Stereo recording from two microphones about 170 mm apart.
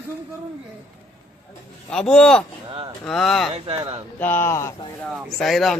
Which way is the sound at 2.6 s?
30° right (ahead or behind).